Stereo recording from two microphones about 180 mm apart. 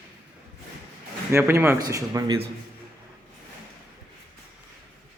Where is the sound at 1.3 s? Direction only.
15° right (ahead or behind).